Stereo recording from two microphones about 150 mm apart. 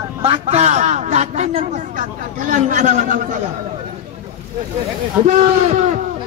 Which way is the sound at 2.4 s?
60° right (ahead or behind).